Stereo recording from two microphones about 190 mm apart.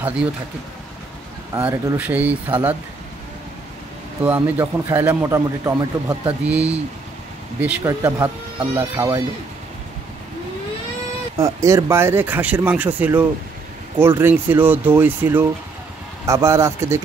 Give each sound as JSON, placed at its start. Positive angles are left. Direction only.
{"t": 0.0, "sound": "speech", "side_deg": -5}
{"t": 1.5, "sound": "speech", "side_deg": -10}
{"t": 4.2, "sound": "speech", "side_deg": -10}
{"t": 6.4, "sound": "speech", "side_deg": -5}
{"t": 7.8, "sound": "speech", "side_deg": -15}
{"t": 11.3, "sound": "speech", "side_deg": -15}